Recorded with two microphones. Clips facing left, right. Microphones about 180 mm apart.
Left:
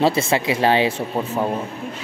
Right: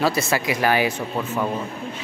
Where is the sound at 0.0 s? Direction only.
25° left (ahead or behind).